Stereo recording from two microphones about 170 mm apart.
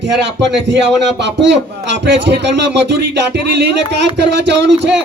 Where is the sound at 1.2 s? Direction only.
90° right.